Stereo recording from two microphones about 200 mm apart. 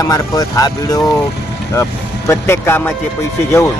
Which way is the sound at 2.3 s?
10° left (ahead or behind).